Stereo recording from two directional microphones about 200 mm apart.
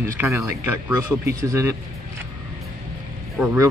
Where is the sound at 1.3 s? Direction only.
15° right (ahead or behind).